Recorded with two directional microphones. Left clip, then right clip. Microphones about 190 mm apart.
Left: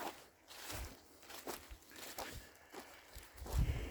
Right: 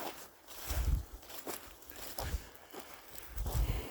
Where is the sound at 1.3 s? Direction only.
55° right (ahead or behind).